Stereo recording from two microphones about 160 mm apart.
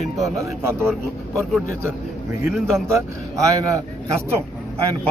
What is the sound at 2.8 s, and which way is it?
Speech, 20° right (ahead or behind).